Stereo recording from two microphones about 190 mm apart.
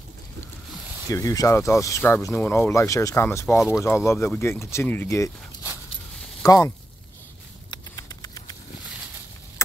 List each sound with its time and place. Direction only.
1.1 s speech: 20° left (ahead or behind)
6.4 s speech: 20° left (ahead or behind)
7.7 s a sound: 20° left (ahead or behind)